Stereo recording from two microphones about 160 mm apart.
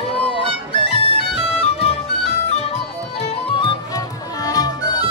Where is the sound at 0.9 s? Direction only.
35° left (ahead or behind).